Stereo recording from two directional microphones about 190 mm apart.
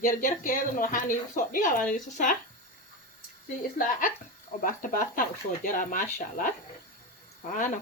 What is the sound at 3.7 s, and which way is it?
Speech, 45° left (ahead or behind).